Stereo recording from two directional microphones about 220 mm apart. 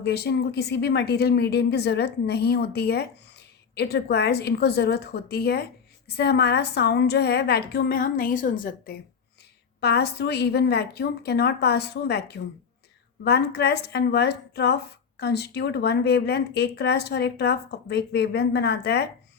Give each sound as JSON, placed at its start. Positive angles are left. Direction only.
{"t": 0.0, "sound": "a woman's voice", "side_deg": 50}
{"t": 9.8, "sound": "a woman's voice", "side_deg": 50}